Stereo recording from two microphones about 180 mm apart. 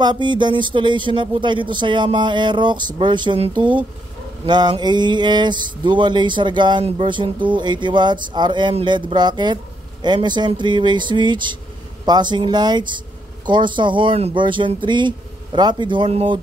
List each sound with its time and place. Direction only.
0.0 s mantra: 25° right (ahead or behind)